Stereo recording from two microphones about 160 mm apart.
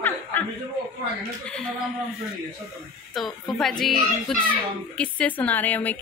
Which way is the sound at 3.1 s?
Centre (ahead or behind).